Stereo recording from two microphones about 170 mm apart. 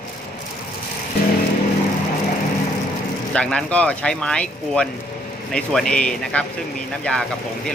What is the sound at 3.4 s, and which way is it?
Speech, 5° left (ahead or behind).